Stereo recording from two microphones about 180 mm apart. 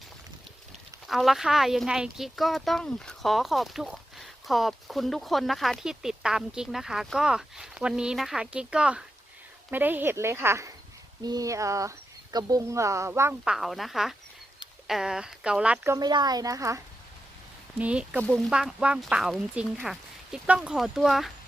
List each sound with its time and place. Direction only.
1.0 s speech: centre (ahead or behind); by 16.8 s 15° right (ahead or behind)
17.7 s speech: 5° right (ahead or behind)
18.2 s speech: 5° left (ahead or behind)
18.5 s speech: 5° right (ahead or behind)